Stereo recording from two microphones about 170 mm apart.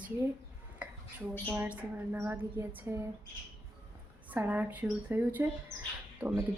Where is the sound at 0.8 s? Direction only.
10° right (ahead or behind).